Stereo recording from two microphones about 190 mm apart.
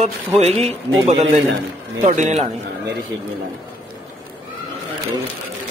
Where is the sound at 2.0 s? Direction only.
40° right (ahead or behind).